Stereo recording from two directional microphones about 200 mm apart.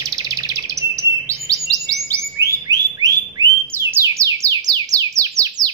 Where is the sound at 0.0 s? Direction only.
15° right (ahead or behind).